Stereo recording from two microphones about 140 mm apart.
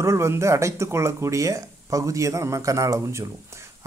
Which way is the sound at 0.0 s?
20° right (ahead or behind).